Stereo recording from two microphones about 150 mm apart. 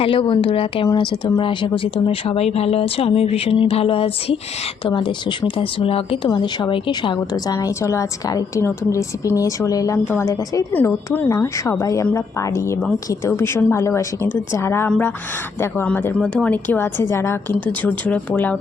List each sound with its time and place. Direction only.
0.0 s a woman's voice: 35° left (ahead or behind)
10.7 s a woman's voice: 10° left (ahead or behind)